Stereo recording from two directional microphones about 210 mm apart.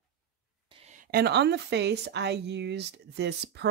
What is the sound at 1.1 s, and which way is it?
Speech, 50° right (ahead or behind).